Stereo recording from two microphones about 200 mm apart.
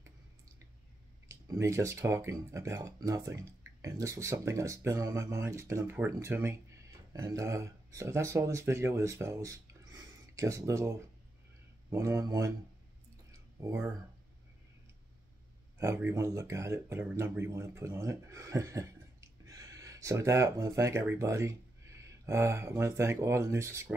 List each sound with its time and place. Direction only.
1.3 s speech: 15° right (ahead or behind)
13.3 s a sound: 15° right (ahead or behind)
15.8 s speech: 15° right (ahead or behind)